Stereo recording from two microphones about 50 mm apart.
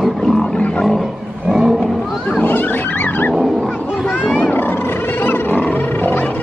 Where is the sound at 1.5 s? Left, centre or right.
Centre.